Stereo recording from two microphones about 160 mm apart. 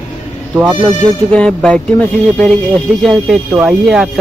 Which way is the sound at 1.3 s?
5° left (ahead or behind).